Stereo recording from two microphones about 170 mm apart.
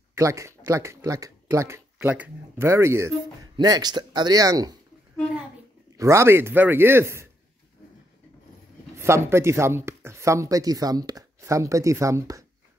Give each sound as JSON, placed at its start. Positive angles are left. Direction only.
{"t": 0.1, "sound": "speech", "side_deg": -15}
{"t": 2.0, "sound": "speech", "side_deg": -10}
{"t": 5.9, "sound": "speech", "side_deg": -15}
{"t": 8.9, "sound": "speech", "side_deg": -15}